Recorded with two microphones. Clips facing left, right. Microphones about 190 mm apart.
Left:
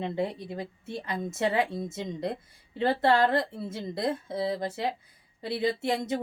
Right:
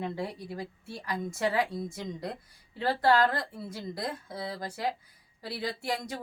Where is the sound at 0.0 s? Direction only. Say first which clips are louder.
Left 4 dB; 20° left (ahead or behind).